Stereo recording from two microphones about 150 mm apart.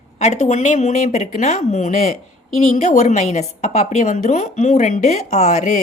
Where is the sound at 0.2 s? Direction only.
50° left (ahead or behind).